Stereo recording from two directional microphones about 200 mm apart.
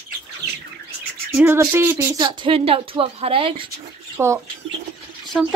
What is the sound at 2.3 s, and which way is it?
A woman's voice, 25° right (ahead or behind).